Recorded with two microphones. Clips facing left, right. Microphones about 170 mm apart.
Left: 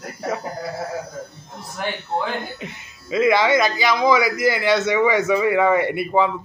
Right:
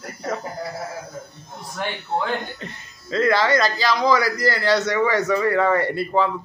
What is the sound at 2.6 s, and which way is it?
A man's voice, 10° left (ahead or behind).